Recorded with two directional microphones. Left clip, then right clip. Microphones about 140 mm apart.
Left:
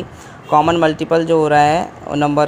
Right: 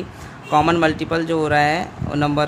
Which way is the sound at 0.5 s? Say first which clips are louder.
Left 3 dB; 10° left (ahead or behind).